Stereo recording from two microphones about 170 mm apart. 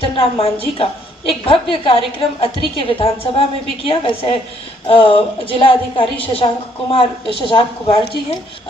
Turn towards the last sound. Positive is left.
turn(degrees=30)  # may be behind; listen again after turning